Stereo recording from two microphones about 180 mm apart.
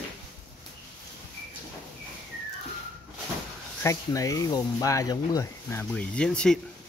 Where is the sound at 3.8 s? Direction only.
20° left (ahead or behind).